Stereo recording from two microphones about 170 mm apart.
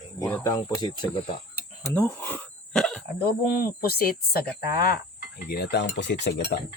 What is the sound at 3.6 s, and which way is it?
Speech, 65° left (ahead or behind).